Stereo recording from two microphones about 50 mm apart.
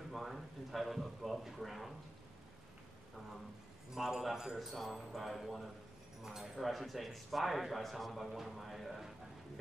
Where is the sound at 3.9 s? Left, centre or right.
Centre.